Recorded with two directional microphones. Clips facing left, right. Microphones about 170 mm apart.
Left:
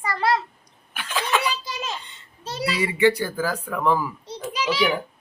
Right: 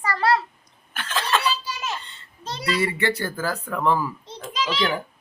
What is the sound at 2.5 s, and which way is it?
A child's voice, 5° left (ahead or behind).